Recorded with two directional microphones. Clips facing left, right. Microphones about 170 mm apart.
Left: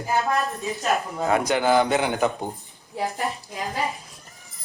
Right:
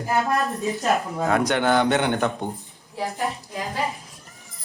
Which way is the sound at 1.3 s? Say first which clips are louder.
Even; centre (ahead or behind).